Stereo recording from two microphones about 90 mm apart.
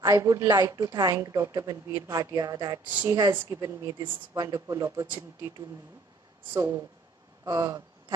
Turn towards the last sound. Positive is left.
turn(degrees=-40)  # may be behind; listen again after turning